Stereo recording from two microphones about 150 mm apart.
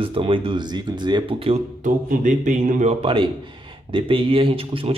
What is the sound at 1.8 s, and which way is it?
Speech, 55° right (ahead or behind).